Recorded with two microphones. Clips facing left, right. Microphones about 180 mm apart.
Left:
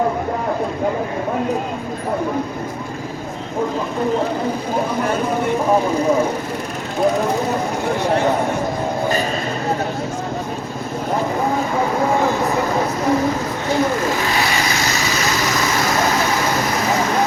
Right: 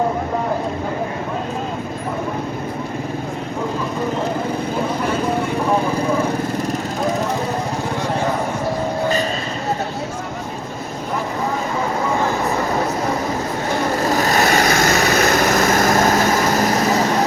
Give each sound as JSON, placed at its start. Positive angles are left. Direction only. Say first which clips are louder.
{"t": 14.2, "sound": "vehicle", "louder": "right 4 dB", "side_deg": -45}